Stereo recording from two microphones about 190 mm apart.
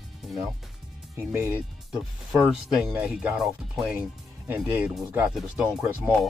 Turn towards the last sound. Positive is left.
turn(degrees=-5)  # may be behind; listen again after turning